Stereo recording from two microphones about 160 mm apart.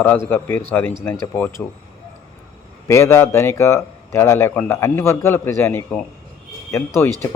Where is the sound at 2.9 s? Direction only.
15° left (ahead or behind).